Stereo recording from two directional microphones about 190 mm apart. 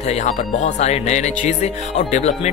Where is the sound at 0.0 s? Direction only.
35° left (ahead or behind).